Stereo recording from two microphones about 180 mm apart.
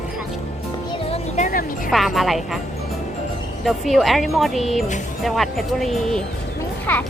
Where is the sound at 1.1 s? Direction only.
45° left (ahead or behind).